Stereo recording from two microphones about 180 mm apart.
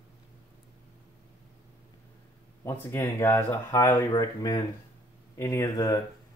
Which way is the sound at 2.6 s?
15° left (ahead or behind).